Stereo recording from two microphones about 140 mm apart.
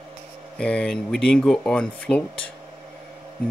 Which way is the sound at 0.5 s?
5° left (ahead or behind).